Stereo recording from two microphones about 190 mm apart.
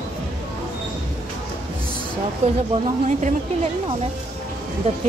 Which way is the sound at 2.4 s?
35° right (ahead or behind).